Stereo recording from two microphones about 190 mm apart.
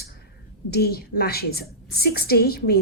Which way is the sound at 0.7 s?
55° left (ahead or behind).